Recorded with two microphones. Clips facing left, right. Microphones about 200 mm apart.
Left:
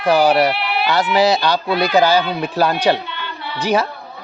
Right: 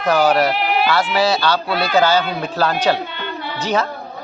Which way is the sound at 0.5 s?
45° right (ahead or behind).